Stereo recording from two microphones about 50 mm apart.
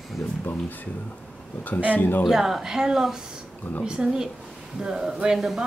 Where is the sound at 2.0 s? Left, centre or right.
Left.